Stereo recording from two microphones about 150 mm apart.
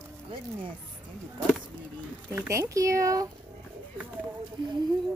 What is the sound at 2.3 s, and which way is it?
Speech, 20° right (ahead or behind).